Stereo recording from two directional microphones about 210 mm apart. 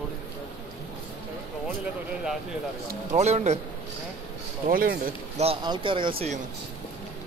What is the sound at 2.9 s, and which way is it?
Speech, 35° right (ahead or behind).